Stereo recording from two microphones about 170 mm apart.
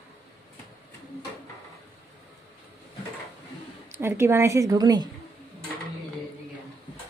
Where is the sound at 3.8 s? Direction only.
15° right (ahead or behind).